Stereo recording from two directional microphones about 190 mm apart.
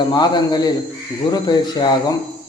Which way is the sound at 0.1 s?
20° left (ahead or behind).